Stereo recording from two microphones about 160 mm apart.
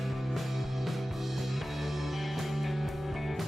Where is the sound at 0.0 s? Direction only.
Centre (ahead or behind).